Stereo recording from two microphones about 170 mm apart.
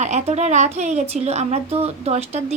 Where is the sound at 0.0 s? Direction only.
40° right (ahead or behind).